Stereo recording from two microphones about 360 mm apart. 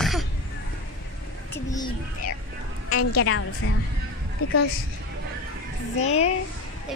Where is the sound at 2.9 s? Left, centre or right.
Left.